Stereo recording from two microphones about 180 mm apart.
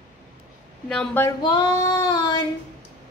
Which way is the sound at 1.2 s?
20° left (ahead or behind).